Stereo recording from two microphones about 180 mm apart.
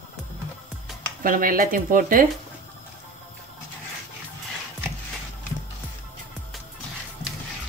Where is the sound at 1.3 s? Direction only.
50° right (ahead or behind).